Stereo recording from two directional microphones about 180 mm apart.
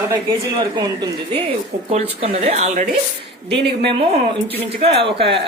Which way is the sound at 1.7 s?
85° right.